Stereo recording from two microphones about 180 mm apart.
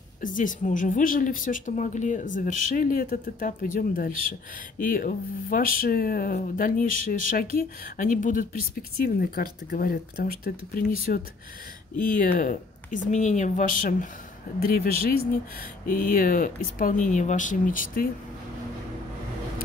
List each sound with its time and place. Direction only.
0.2 s speech: 45° left (ahead or behind)
12.0 s speech: 50° left (ahead or behind)